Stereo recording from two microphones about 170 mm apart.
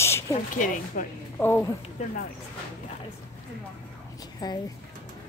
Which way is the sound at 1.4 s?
10° left (ahead or behind).